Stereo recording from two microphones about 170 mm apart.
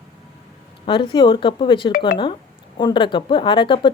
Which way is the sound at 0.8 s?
30° left (ahead or behind).